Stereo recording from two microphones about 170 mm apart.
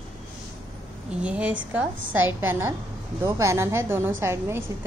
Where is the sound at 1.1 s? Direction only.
5° right (ahead or behind).